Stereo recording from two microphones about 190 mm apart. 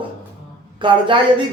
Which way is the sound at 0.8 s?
25° right (ahead or behind).